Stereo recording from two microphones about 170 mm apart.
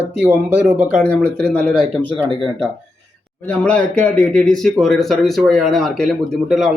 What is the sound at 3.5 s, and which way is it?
Speech, 5° left (ahead or behind).